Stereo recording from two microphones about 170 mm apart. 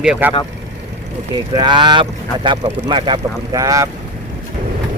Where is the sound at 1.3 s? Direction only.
25° right (ahead or behind).